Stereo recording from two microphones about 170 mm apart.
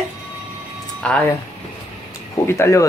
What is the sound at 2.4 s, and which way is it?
Speech, 15° left (ahead or behind).